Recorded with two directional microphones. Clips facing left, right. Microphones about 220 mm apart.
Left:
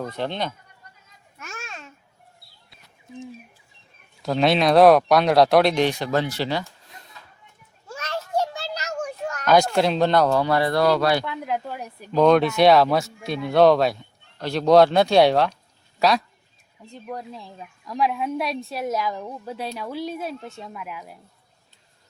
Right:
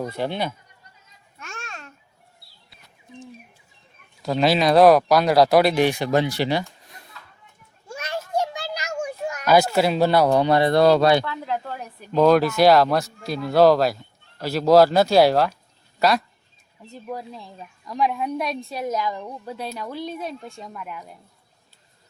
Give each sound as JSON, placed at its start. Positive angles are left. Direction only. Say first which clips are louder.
{"t": 0.0, "sound": "speech", "louder": "right 2 dB", "side_deg": -10}
{"t": 1.4, "sound": "babbling", "louder": "even", "side_deg": 5}
{"t": 4.2, "sound": "a woman's voice", "louder": "even", "side_deg": 0}
{"t": 7.9, "sound": "children playing", "louder": "even", "side_deg": -10}
{"t": 10.3, "sound": "speech", "louder": "right 3 dB", "side_deg": -20}
{"t": 11.3, "sound": "speech", "louder": "even", "side_deg": 15}
{"t": 12.1, "sound": "a woman's voice", "louder": "even", "side_deg": -5}